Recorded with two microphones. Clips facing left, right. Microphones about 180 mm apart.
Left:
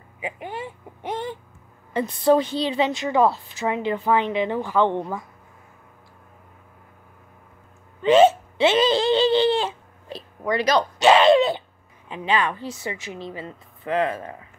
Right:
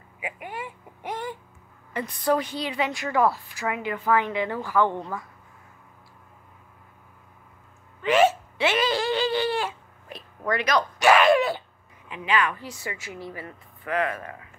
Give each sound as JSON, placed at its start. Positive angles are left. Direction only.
{"t": 0.2, "sound": "a woman's voice", "side_deg": 30}
{"t": 8.0, "sound": "hiccup", "side_deg": 25}
{"t": 10.5, "sound": "a sound", "side_deg": 30}
{"t": 12.1, "sound": "a woman's voice", "side_deg": 30}